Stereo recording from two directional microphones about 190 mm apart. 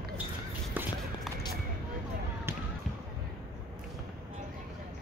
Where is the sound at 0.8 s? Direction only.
10° right (ahead or behind).